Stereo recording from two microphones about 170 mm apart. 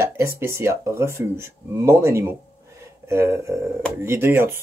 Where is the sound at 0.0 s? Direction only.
15° right (ahead or behind).